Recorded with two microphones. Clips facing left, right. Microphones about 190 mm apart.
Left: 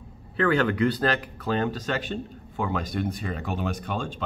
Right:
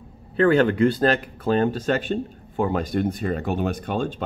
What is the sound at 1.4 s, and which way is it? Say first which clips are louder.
Speech: right 7 dB; 30° right (ahead or behind).